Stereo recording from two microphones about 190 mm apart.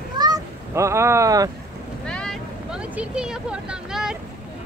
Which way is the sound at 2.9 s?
5° right (ahead or behind).